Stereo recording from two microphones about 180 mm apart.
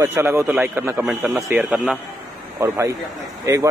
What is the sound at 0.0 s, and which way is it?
Speech, 10° right (ahead or behind).